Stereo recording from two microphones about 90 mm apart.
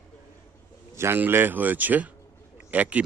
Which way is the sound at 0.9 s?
30° right (ahead or behind).